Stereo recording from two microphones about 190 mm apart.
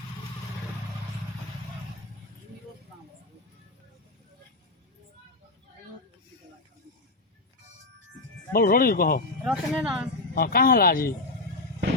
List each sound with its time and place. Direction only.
8.5 s speech: 50° left (ahead or behind)
9.4 s speech: 5° right (ahead or behind)
10.3 s speech: 50° left (ahead or behind)